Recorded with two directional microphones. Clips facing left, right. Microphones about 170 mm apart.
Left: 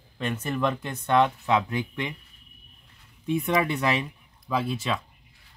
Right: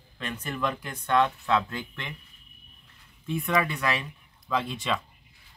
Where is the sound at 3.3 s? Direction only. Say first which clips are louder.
Left 3 dB; 20° left (ahead or behind).